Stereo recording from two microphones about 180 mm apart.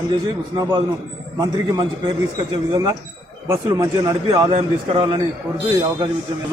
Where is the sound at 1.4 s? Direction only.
25° right (ahead or behind).